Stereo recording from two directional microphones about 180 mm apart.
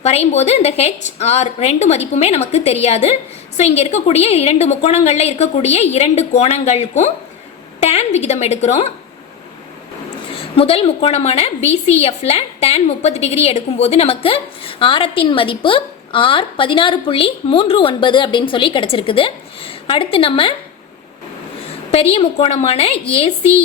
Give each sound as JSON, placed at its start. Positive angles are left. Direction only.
{"t": 0.0, "sound": "a woman's voice", "side_deg": 35}
{"t": 10.5, "sound": "a woman's voice", "side_deg": 30}
{"t": 22.1, "sound": "a woman's voice", "side_deg": 35}